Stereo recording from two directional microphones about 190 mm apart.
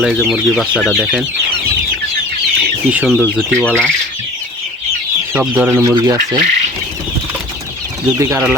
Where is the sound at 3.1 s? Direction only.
10° left (ahead or behind).